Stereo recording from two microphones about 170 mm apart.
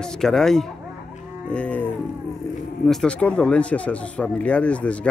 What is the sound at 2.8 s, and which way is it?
Speech, 5° left (ahead or behind).